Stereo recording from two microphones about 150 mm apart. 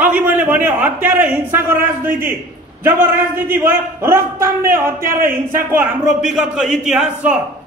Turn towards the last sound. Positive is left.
turn(degrees=-5)  # may be behind; listen again after turning